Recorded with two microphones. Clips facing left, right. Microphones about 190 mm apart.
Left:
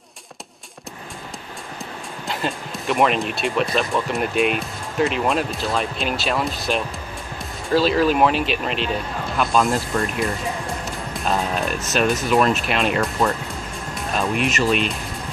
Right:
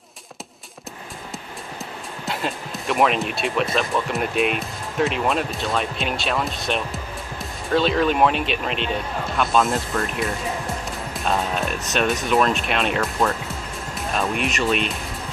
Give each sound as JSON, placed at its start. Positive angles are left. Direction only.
{"t": 2.2, "sound": "speech", "side_deg": 0}